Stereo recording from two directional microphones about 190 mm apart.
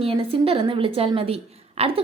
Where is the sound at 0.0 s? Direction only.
30° right (ahead or behind).